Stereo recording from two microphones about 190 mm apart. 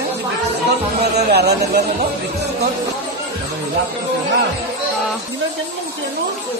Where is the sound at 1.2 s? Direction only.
60° right (ahead or behind).